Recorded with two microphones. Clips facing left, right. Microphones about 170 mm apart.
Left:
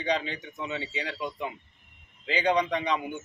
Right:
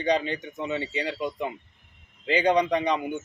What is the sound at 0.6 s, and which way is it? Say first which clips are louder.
Speech: right 5 dB; 5° right (ahead or behind).